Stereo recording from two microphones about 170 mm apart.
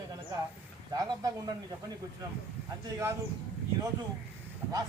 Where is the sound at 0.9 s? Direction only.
20° right (ahead or behind).